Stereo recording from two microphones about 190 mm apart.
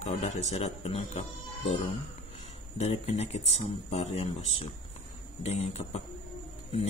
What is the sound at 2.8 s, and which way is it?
Speech, 35° left (ahead or behind).